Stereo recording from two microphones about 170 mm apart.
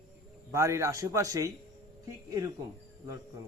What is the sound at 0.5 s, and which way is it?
A man's voice, 15° right (ahead or behind).